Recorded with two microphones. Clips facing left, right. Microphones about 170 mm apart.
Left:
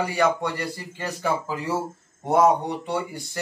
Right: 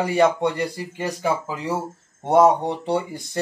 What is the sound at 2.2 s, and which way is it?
A man's voice, 25° right (ahead or behind).